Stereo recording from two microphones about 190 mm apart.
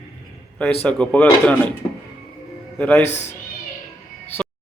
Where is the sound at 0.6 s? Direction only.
5° left (ahead or behind).